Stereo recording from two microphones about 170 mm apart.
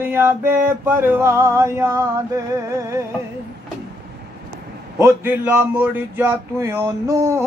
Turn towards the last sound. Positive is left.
turn(degrees=-15)  # may be behind; listen again after turning